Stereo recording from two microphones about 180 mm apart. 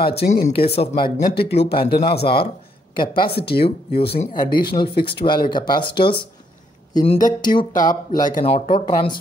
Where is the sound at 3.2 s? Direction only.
30° left (ahead or behind).